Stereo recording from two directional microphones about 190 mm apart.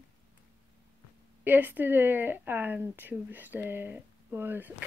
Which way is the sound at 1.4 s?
10° right (ahead or behind).